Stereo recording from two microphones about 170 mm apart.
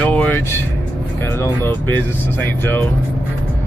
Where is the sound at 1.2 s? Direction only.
15° left (ahead or behind).